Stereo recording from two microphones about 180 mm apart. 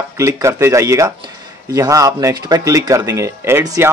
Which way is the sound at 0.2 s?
15° right (ahead or behind).